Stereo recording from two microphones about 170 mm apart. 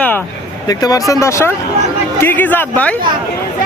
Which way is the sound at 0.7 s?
20° left (ahead or behind).